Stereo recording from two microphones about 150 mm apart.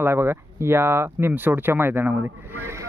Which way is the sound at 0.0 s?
15° right (ahead or behind).